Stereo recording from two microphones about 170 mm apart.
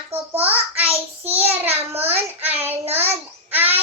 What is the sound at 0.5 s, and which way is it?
Child singing, 35° right (ahead or behind).